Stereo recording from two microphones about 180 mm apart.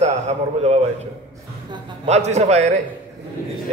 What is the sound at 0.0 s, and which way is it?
Speech, 35° right (ahead or behind).